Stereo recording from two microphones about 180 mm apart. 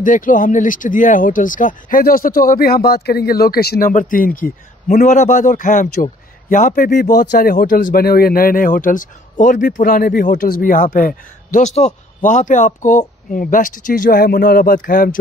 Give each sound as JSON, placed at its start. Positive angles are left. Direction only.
{"t": 0.0, "sound": "speech", "side_deg": 45}